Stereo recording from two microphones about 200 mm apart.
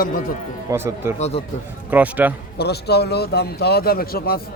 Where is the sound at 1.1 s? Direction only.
35° left (ahead or behind).